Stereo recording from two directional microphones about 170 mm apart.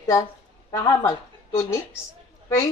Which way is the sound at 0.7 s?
20° left (ahead or behind).